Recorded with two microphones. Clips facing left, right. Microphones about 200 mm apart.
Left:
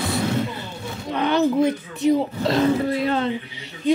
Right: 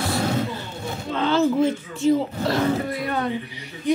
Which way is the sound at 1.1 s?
15° left (ahead or behind).